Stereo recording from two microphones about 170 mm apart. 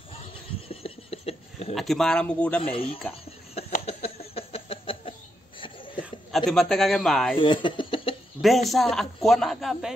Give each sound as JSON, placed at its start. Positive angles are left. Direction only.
{"t": 0.1, "sound": "a sound", "side_deg": 35}
{"t": 1.8, "sound": "a man's voice", "side_deg": 0}
{"t": 2.6, "sound": "speech", "side_deg": 35}
{"t": 3.5, "sound": "chicken", "side_deg": 35}
{"t": 6.0, "sound": "speech", "side_deg": 0}
{"t": 7.3, "sound": "a sound", "side_deg": 30}
{"t": 8.4, "sound": "a man's voice", "side_deg": 0}